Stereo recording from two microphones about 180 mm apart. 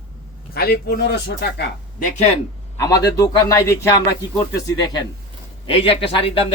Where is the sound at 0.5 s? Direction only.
60° left (ahead or behind).